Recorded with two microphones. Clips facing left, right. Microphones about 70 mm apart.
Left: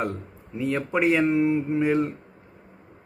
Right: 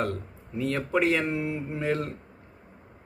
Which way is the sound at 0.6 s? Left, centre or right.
Centre.